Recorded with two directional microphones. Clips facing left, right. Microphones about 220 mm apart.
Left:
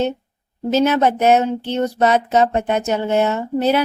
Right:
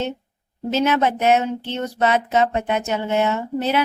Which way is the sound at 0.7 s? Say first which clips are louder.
Left 4 dB; 40° left (ahead or behind).